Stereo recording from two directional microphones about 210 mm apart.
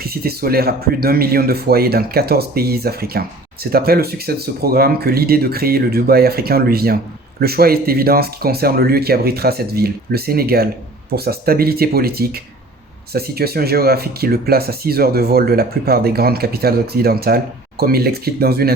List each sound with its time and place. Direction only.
0.0 s speech: 45° right (ahead or behind)